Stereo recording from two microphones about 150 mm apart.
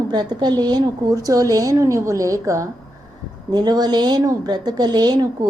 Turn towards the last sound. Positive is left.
turn(degrees=-25)  # may be behind; listen again after turning